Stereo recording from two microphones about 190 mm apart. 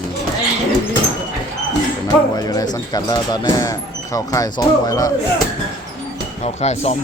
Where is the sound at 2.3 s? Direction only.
20° left (ahead or behind).